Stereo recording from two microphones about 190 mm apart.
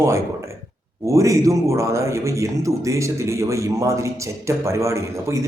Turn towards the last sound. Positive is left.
turn(degrees=-15)  # may be behind; listen again after turning